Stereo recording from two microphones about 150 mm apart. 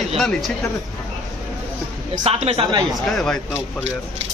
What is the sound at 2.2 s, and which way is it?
Speech, 45° right (ahead or behind).